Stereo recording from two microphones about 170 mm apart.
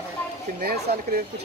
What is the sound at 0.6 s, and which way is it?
Speech, 70° right (ahead or behind).